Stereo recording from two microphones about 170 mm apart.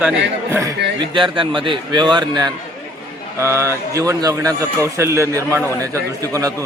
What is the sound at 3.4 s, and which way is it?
A man's voice, 15° right (ahead or behind).